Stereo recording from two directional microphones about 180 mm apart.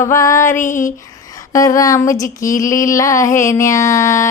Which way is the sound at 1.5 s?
20° left (ahead or behind).